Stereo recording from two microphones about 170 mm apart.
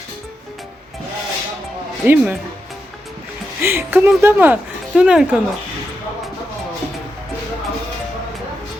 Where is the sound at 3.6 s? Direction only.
15° right (ahead or behind).